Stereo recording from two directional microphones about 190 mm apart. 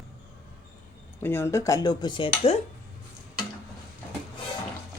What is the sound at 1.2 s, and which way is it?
Speech, 10° left (ahead or behind).